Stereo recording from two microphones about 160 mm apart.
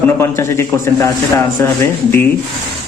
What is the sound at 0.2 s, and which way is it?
Speech, 15° left (ahead or behind).